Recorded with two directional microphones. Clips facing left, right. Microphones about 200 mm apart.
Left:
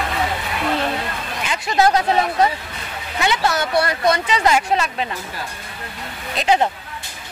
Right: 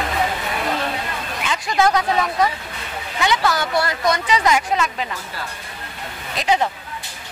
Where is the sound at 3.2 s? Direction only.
25° left (ahead or behind).